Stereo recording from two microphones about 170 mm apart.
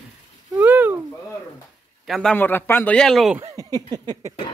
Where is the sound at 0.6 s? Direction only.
10° right (ahead or behind).